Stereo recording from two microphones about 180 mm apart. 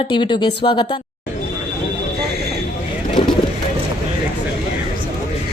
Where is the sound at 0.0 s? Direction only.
25° left (ahead or behind).